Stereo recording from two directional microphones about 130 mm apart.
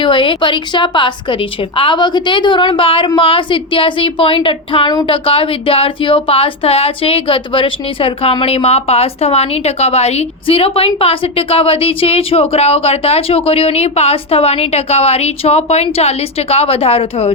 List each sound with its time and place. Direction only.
0.0 s a woman's voice: 40° left (ahead or behind)